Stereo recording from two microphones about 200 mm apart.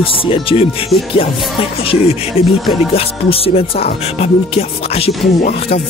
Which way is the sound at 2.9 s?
30° left (ahead or behind).